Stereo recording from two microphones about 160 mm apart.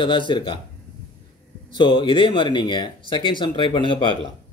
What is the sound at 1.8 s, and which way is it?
Speech, 30° left (ahead or behind).